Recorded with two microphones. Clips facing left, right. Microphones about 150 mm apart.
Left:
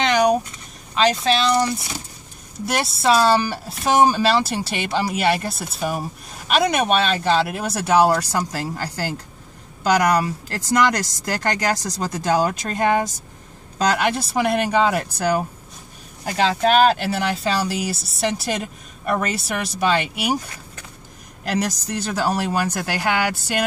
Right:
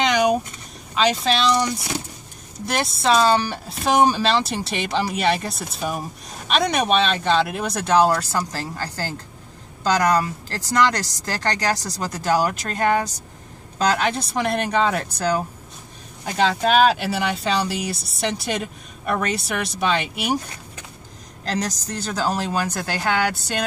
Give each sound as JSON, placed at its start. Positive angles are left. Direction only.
{"t": 0.0, "sound": "vehicle", "side_deg": 0}
{"t": 0.9, "sound": "speech", "side_deg": 0}
{"t": 2.6, "sound": "speech", "side_deg": 5}
{"t": 21.5, "sound": "speech", "side_deg": 10}